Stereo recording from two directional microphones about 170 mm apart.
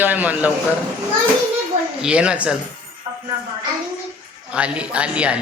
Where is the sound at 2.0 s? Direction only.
5° right (ahead or behind).